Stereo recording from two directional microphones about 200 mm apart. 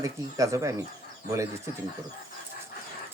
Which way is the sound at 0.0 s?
15° right (ahead or behind).